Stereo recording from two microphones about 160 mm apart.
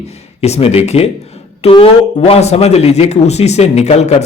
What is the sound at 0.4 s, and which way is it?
A man's voice, 40° left (ahead or behind).